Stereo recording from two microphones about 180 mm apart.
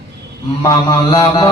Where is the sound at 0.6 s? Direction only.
25° left (ahead or behind).